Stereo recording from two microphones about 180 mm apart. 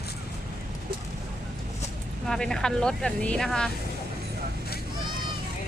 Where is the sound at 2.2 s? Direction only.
Centre (ahead or behind).